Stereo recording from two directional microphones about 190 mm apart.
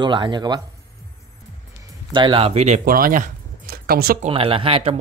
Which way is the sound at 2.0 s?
25° right (ahead or behind).